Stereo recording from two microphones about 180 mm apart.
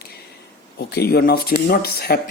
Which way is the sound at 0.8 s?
65° left (ahead or behind).